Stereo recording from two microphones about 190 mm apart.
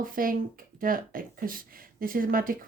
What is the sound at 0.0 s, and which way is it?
Speech, 50° right (ahead or behind).